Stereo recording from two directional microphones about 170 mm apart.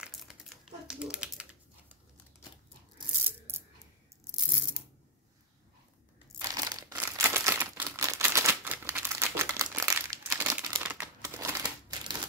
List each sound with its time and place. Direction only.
0.0 s crumpling: centre (ahead or behind)
1.1 s a sound: 5° right (ahead or behind)
3.3 s a sound: 15° right (ahead or behind)
6.4 s crumpling: 20° right (ahead or behind)
7.0 s camera: 15° right (ahead or behind)
11.6 s typewriter: 25° right (ahead or behind)